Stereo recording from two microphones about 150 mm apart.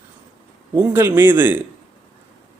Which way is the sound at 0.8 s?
15° right (ahead or behind).